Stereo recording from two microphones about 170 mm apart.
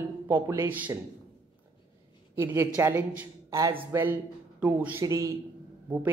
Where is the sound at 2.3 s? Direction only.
15° right (ahead or behind).